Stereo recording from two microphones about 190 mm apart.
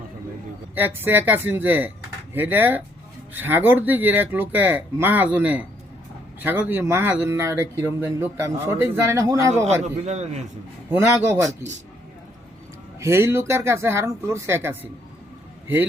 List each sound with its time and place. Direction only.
0.8 s speech: 10° right (ahead or behind)
10.1 s a man's voice: 35° right (ahead or behind)
10.9 s speech: 10° right (ahead or behind)
13.0 s a man's voice: 15° right (ahead or behind)